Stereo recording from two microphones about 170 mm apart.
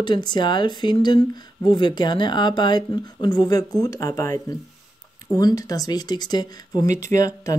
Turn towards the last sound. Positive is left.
turn(degrees=20)  # may be behind; listen again after turning